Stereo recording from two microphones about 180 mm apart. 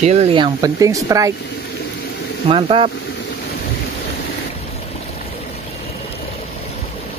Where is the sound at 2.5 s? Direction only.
30° right (ahead or behind).